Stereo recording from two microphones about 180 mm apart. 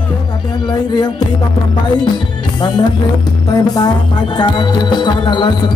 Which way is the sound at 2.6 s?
25° left (ahead or behind).